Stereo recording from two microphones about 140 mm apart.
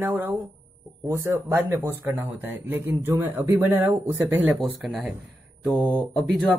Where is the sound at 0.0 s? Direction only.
15° right (ahead or behind).